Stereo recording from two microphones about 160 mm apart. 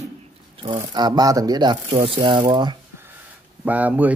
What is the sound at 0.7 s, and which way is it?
Speech, 25° right (ahead or behind).